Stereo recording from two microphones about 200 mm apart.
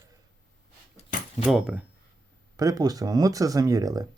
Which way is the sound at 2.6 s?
20° right (ahead or behind).